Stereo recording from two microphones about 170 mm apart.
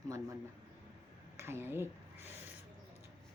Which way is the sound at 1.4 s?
15° right (ahead or behind).